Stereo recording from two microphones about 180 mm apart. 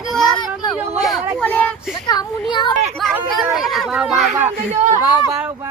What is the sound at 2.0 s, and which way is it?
Speech, 25° left (ahead or behind).